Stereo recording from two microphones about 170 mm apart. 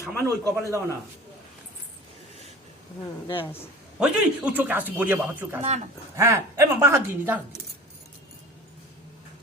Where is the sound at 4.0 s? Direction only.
10° right (ahead or behind).